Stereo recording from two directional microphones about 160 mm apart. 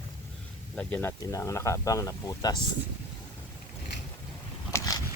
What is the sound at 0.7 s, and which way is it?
Speech, 10° left (ahead or behind).